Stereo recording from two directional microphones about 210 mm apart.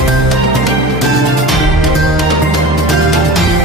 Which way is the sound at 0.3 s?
Centre (ahead or behind).